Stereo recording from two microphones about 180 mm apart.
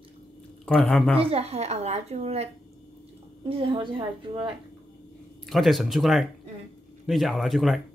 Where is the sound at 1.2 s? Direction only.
35° right (ahead or behind).